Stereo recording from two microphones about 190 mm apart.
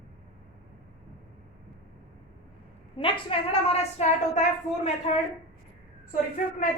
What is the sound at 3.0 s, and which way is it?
A woman's voice, 30° left (ahead or behind).